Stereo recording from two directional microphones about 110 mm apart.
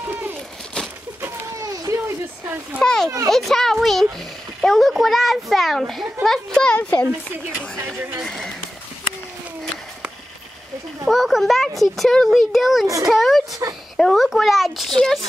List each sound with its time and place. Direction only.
1.6 s a sound: 30° right (ahead or behind)
2.4 s speech: 15° right (ahead or behind)
2.8 s a child's voice: 5° left (ahead or behind)
11.1 s a child's voice: centre (ahead or behind)
13.6 s speech: 30° right (ahead or behind)
13.9 s a child's voice: centre (ahead or behind)